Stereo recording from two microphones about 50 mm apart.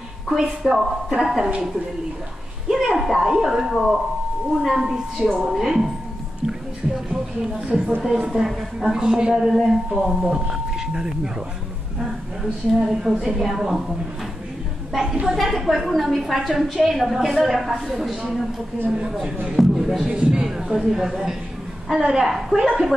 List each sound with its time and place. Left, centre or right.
0.3 s a woman's voice: centre
2.7 s a man's voice: centre
6.9 s a man's voice: centre
12.8 s a man's voice: centre